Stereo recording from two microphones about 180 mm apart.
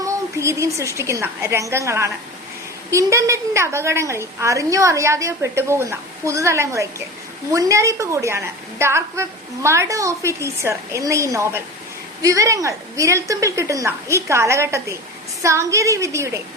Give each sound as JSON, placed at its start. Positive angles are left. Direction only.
{"t": 0.0, "sound": "a woman's voice", "side_deg": -15}